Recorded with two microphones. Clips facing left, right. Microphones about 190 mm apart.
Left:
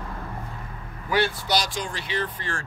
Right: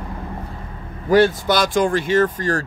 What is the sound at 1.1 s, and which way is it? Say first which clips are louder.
Speech: right 9 dB; 45° right (ahead or behind).